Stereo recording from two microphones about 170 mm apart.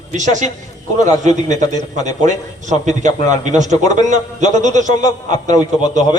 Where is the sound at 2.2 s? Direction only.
45° right (ahead or behind).